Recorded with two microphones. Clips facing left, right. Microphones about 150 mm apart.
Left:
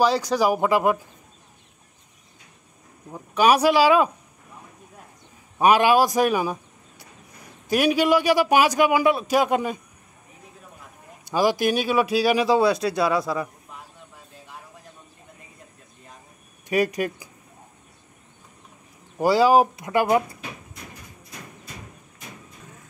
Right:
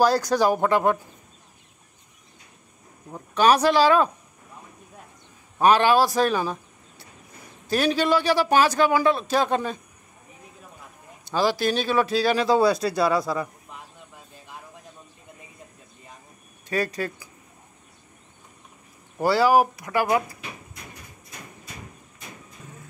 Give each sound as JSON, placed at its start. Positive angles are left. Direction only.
{"t": 0.2, "sound": "speech", "side_deg": 5}
{"t": 3.1, "sound": "speech", "side_deg": 10}
{"t": 5.6, "sound": "speech", "side_deg": 10}
{"t": 11.2, "sound": "speech", "side_deg": 15}
{"t": 16.6, "sound": "speech", "side_deg": 15}
{"t": 19.1, "sound": "speech", "side_deg": 15}